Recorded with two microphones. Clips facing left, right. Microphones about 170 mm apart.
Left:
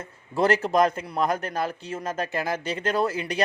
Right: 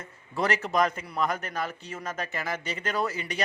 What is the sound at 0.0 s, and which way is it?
A man's voice, 30° left (ahead or behind).